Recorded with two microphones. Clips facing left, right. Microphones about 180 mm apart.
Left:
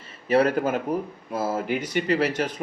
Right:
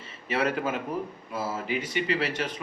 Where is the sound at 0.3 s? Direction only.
40° left (ahead or behind).